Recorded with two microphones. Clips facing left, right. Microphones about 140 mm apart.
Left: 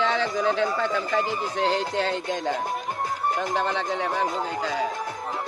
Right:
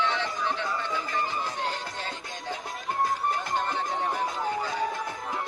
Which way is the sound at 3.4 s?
90° left.